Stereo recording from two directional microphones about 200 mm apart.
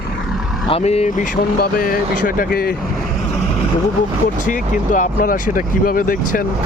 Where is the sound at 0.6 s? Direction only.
30° left (ahead or behind); by 2.7 s 45° left (ahead or behind).